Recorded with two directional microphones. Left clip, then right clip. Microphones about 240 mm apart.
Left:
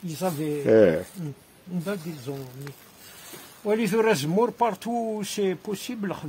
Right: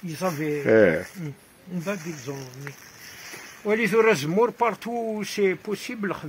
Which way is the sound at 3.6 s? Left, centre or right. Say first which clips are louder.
Right 3 dB; left.